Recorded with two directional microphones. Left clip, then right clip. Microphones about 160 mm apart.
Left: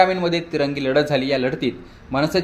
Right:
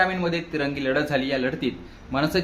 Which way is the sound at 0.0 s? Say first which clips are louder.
Left 6 dB; 25° left (ahead or behind).